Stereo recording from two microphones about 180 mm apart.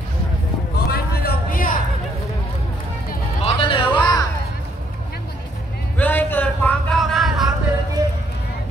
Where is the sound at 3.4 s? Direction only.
35° left (ahead or behind).